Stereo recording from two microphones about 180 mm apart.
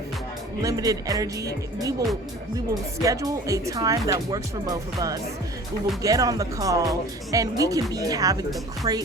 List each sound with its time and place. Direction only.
0.6 s speech: 20° right (ahead or behind)